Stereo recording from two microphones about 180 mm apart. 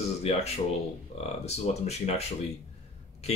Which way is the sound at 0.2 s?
35° left (ahead or behind).